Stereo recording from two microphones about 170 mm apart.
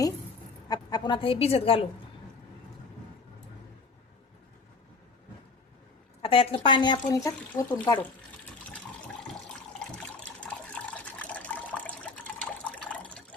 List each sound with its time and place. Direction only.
0.7 s a woman's voice: 25° left (ahead or behind)
6.2 s speech: 35° left (ahead or behind)
9.7 s water: 5° left (ahead or behind)